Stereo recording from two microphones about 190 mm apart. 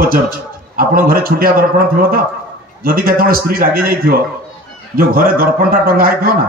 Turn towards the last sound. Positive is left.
turn(degrees=-50)  # may be behind; listen again after turning